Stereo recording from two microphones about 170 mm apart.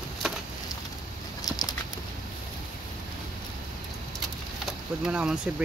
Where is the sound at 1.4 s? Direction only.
25° left (ahead or behind).